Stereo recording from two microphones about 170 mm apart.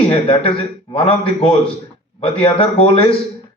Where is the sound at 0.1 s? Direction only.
35° left (ahead or behind).